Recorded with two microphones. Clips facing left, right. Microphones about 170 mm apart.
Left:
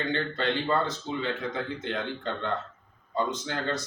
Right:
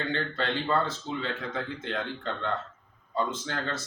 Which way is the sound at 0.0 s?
15° left (ahead or behind).